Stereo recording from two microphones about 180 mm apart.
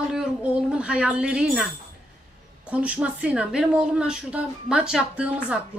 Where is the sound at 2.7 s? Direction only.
5° right (ahead or behind).